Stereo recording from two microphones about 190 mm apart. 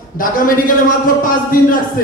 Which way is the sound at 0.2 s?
45° left (ahead or behind).